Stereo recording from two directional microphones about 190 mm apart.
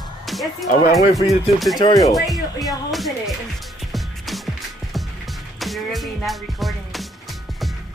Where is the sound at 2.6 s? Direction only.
Centre (ahead or behind).